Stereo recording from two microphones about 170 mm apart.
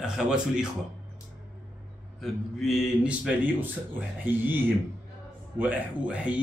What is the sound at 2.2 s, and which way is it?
Speech, centre (ahead or behind).